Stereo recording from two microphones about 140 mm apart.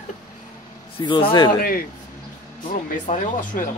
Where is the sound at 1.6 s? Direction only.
90° left.